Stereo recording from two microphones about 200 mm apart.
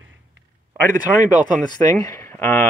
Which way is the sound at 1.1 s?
40° right (ahead or behind).